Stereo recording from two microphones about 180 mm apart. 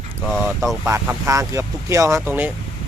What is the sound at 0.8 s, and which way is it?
Speech, 15° right (ahead or behind).